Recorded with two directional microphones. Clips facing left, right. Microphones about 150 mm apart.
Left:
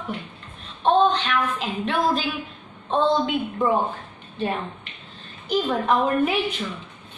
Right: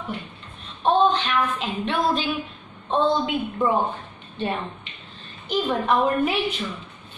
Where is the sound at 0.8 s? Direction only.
Centre (ahead or behind).